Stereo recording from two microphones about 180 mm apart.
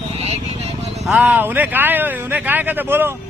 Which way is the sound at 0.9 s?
Centre (ahead or behind).